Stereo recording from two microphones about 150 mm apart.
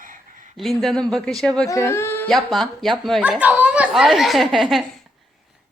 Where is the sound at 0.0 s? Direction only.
65° right (ahead or behind).